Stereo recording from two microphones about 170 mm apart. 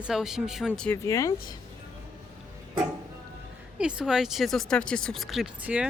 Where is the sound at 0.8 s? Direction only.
15° left (ahead or behind).